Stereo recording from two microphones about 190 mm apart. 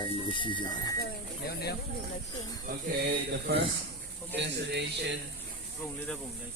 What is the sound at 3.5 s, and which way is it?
A man's voice, 55° right (ahead or behind).